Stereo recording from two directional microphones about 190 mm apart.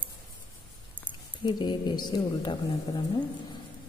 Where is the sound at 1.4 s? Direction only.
25° left (ahead or behind).